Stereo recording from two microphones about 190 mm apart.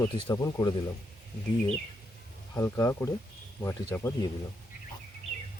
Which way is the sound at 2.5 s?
15° left (ahead or behind).